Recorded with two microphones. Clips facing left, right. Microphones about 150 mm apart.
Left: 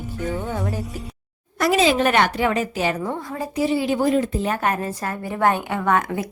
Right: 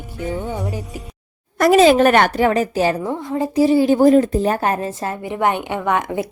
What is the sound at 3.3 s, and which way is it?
Speech, 25° right (ahead or behind).